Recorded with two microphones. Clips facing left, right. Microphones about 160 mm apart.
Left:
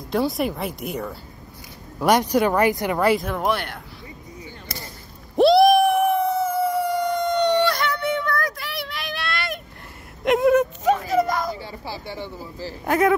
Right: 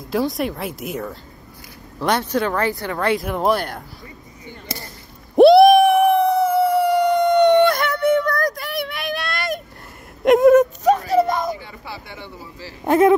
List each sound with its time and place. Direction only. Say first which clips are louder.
0.1 s speech: right 1 dB; centre (ahead or behind)
2.0 s speech: left 2 dB; 15° left (ahead or behind)
3.4 s speech: right 7 dB; 40° right (ahead or behind)
5.3 s a sound: right 5 dB; 55° right (ahead or behind)
10.2 s whimper: right 6 dB; 45° right (ahead or behind); by 11.5 s 25° right (ahead or behind)
11.5 s a sound: left 1 dB; 30° left (ahead or behind)
12.8 s speech: right 5 dB; 25° right (ahead or behind)